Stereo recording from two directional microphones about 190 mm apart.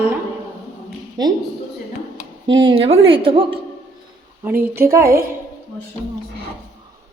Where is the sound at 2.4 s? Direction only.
25° right (ahead or behind).